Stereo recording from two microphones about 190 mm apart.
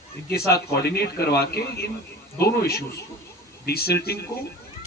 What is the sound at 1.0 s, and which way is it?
Speech, 55° left (ahead or behind).